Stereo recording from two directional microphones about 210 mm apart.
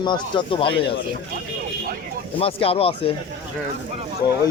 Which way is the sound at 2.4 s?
25° left (ahead or behind).